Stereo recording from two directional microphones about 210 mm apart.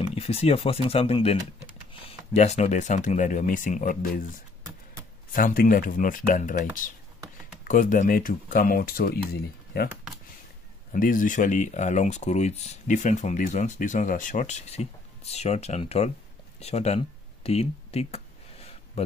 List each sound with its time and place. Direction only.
0.0 s speech: 30° left (ahead or behind)
5.3 s speech: 40° left (ahead or behind)
10.9 s speech: 40° left (ahead or behind)
16.5 s a sound: 30° left (ahead or behind)